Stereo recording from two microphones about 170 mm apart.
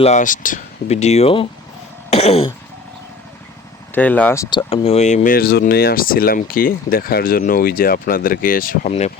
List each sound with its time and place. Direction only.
0.0 s speech: 45° left (ahead or behind)
2.0 s cough: 40° left (ahead or behind)
3.9 s speech: 10° left (ahead or behind)
4.4 s speech: 30° left (ahead or behind); by 8.9 s 55° left (ahead or behind)
8.9 s speech: 40° left (ahead or behind)